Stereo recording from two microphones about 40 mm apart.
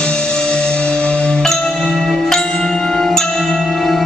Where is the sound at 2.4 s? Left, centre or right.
Centre.